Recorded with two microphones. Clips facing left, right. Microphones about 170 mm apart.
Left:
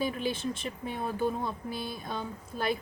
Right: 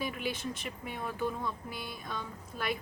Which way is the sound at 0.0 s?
30° left (ahead or behind).